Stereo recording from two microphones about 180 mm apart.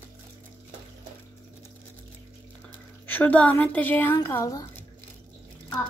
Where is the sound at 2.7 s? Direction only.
10° left (ahead or behind).